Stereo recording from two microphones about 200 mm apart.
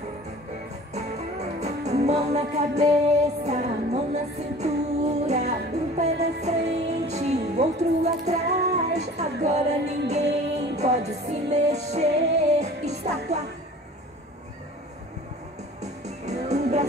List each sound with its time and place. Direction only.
0.9 s music: 35° right (ahead or behind)
15.8 s music: 35° right (ahead or behind)